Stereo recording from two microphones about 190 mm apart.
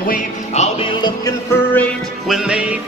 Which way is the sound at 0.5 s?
35° left (ahead or behind).